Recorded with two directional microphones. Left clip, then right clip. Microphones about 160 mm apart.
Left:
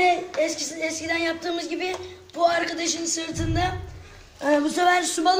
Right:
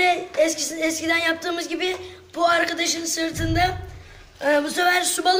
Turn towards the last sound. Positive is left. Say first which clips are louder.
# right 1 dB
turn(degrees=-25)  # may be behind; listen again after turning